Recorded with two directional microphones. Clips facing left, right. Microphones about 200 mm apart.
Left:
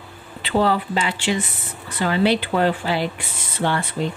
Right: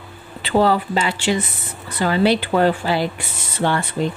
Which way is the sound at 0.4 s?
40° right (ahead or behind).